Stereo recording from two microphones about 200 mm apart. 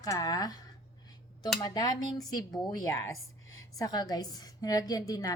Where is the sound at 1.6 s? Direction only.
20° left (ahead or behind).